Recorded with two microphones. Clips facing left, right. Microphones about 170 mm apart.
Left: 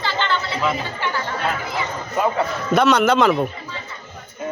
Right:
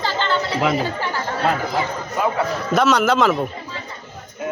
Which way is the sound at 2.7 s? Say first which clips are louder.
Left 1 dB; centre (ahead or behind).